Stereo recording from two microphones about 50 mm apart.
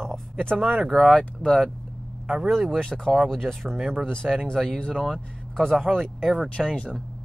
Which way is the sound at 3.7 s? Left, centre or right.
Centre.